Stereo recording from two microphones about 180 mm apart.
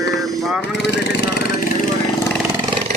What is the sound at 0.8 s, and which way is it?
Speech, 75° left (ahead or behind).